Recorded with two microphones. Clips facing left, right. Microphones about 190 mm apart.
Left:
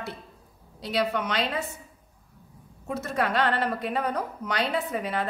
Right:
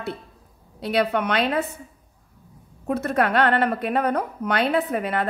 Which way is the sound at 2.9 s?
60° right (ahead or behind).